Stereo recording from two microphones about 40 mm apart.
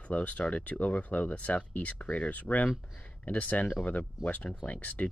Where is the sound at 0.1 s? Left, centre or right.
Left.